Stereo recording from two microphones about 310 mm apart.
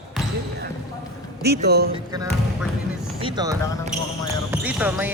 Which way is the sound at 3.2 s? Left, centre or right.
Centre.